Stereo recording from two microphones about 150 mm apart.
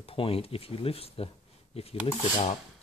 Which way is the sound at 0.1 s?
40° left (ahead or behind).